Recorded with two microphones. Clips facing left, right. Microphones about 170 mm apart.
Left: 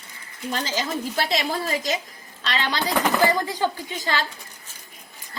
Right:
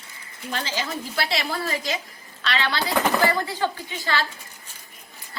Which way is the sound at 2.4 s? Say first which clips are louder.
Even; 40° left (ahead or behind).